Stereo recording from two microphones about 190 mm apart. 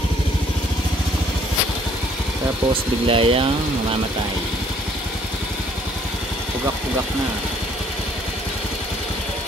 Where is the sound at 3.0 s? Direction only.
30° right (ahead or behind).